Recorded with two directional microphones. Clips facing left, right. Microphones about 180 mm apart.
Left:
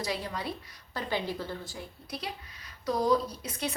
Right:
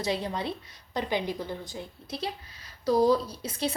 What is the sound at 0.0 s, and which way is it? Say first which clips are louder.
A woman's voice: right 4 dB; 25° right (ahead or behind).